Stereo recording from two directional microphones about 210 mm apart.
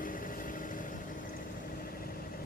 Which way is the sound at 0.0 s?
40° left (ahead or behind).